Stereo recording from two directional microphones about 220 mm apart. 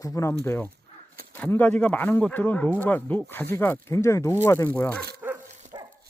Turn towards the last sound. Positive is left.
turn(degrees=-15)  # may be behind; listen again after turning